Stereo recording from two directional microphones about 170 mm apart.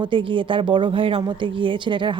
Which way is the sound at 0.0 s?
30° right (ahead or behind).